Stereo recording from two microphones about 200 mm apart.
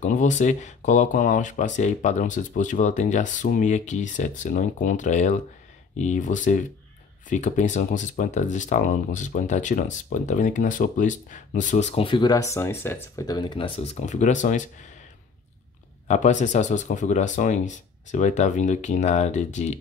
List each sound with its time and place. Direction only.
0.0 s speech: 40° left (ahead or behind)
16.1 s speech: 35° left (ahead or behind)